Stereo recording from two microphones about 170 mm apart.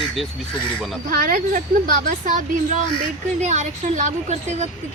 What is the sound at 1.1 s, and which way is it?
A woman's voice, 55° right (ahead or behind).